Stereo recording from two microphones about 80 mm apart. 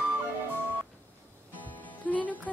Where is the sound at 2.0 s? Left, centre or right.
Centre.